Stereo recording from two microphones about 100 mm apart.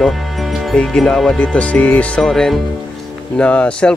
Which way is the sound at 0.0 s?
Centre (ahead or behind).